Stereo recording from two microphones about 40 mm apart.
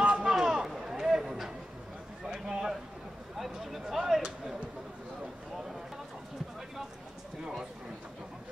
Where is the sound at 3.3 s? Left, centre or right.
Centre.